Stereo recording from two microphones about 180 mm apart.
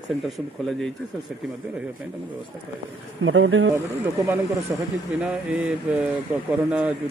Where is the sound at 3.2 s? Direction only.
90° right.